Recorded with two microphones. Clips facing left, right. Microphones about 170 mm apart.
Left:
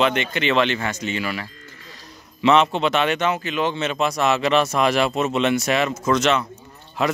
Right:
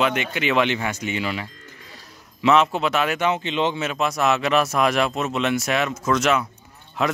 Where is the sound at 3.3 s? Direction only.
25° right (ahead or behind).